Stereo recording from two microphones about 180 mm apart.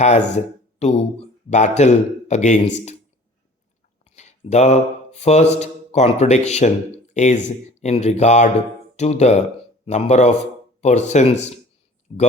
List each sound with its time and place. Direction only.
0.0 s speech: 40° left (ahead or behind)
4.0 s a sound: 40° left (ahead or behind)
5.5 s speech: 40° left (ahead or behind)
12.1 s speech: 25° left (ahead or behind)